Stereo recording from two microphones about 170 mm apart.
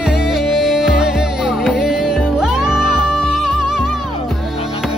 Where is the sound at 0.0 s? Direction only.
Centre (ahead or behind).